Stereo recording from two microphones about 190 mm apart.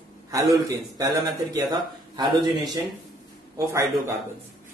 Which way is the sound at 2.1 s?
20° right (ahead or behind).